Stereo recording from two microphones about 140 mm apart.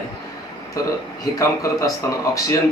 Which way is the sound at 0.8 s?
25° left (ahead or behind).